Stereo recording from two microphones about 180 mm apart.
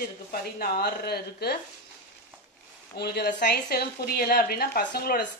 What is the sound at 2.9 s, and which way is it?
Speech, 60° left (ahead or behind).